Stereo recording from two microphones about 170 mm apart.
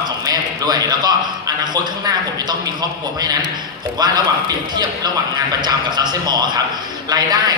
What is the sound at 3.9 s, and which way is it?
Speech, 25° right (ahead or behind).